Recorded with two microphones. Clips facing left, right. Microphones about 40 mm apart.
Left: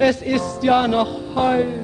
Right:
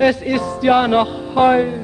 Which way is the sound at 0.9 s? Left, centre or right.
Right.